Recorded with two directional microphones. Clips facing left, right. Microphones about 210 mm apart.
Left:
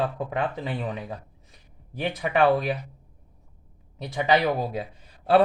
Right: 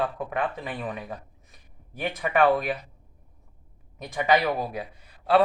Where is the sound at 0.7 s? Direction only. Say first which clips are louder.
Left 2 dB; 15° left (ahead or behind).